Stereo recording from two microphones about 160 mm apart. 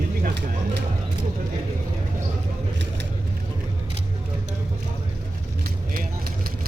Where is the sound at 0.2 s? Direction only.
90° right.